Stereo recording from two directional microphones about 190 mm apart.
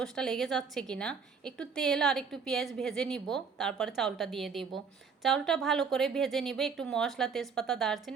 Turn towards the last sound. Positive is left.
turn(degrees=0)  # may be behind; listen again after turning